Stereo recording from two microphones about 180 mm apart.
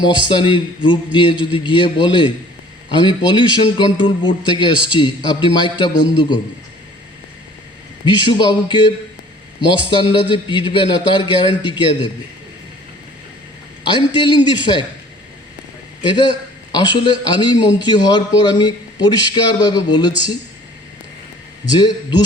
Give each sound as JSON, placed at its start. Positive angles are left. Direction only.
{"t": 0.0, "sound": "a man's voice", "side_deg": 25}
{"t": 8.0, "sound": "a man's voice", "side_deg": 25}
{"t": 9.9, "sound": "a man's voice", "side_deg": 25}
{"t": 13.8, "sound": "a man's voice", "side_deg": 25}
{"t": 16.0, "sound": "a man's voice", "side_deg": 25}
{"t": 21.8, "sound": "a man's voice", "side_deg": 25}